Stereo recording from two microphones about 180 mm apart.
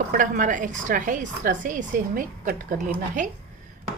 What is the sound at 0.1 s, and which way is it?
A woman's voice, 45° right (ahead or behind).